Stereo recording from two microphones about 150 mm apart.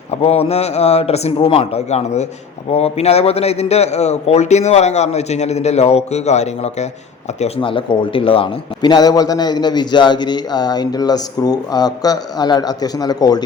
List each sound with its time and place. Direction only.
0.2 s a man's voice: 40° left (ahead or behind); by 13.4 s 25° left (ahead or behind)